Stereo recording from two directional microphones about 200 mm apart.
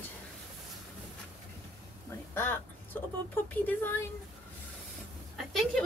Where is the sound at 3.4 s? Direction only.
10° left (ahead or behind).